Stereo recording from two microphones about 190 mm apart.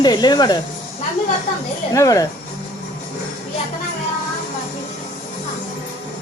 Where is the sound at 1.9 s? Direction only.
15° left (ahead or behind).